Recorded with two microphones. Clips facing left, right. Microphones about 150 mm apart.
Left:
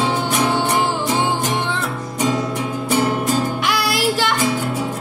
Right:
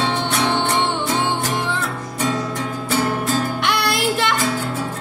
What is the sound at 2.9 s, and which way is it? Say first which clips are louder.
Music: left 2 dB; 20° left (ahead or behind).